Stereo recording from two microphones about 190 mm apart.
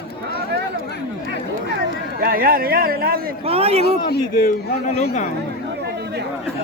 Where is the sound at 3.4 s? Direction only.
30° right (ahead or behind).